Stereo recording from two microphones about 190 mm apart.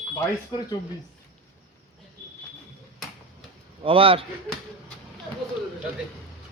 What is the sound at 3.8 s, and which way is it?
Speech, 30° right (ahead or behind).